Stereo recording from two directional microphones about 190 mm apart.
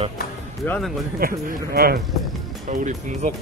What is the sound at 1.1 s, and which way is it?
Speech, 50° right (ahead or behind).